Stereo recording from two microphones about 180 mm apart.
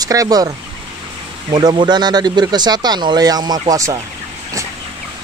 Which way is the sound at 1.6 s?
25° right (ahead or behind).